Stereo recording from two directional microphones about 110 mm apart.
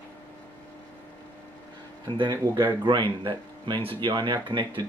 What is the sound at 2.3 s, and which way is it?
Speech, 20° right (ahead or behind).